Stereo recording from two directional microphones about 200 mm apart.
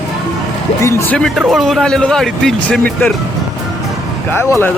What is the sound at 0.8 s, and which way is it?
Speech, 10° left (ahead or behind).